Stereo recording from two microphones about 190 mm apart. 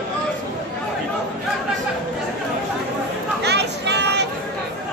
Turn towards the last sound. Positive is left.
turn(degrees=-65)  # may be behind; listen again after turning